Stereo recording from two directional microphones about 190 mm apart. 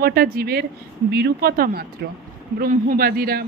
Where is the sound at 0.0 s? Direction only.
55° right (ahead or behind).